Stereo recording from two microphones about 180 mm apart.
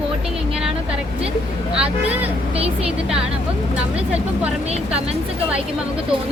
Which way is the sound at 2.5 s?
35° right (ahead or behind).